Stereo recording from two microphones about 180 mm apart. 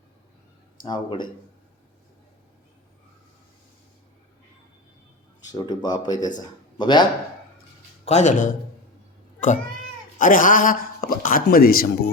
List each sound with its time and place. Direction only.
0.8 s speech: 25° left (ahead or behind)
5.5 s speech: 20° left (ahead or behind)
8.0 s speech: 40° left (ahead or behind)
10.2 s speech: 50° left (ahead or behind)